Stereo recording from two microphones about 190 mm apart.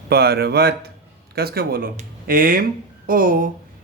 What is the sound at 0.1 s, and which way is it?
A man's voice, 55° right (ahead or behind).